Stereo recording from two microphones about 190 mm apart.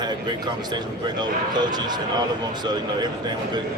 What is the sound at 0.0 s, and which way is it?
Speech, 20° right (ahead or behind).